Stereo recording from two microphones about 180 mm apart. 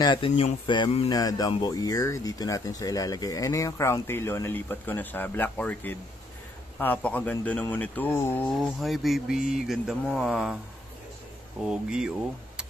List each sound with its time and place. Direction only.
0.0 s speech: 25° left (ahead or behind)
0.3 s speech: 40° left (ahead or behind)
0.7 s speech: 25° left (ahead or behind); by 10.6 s 5° right (ahead or behind)
11.6 s speech: 5° right (ahead or behind)